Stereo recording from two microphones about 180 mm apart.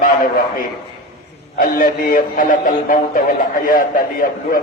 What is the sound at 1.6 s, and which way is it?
A man's voice, 50° left (ahead or behind).